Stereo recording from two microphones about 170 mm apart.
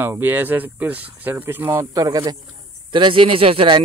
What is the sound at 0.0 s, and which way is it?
A man's voice, 15° right (ahead or behind).